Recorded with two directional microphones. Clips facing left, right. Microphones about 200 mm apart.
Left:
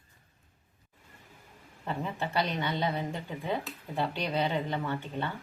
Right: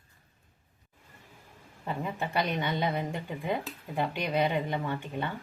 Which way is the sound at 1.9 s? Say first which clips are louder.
Even; 10° right (ahead or behind).